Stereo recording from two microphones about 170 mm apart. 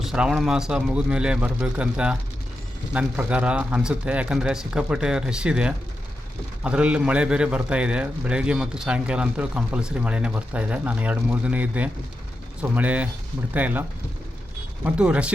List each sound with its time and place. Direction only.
0.0 s a man's voice: 5° right (ahead or behind)
14.8 s a man's voice: 5° right (ahead or behind)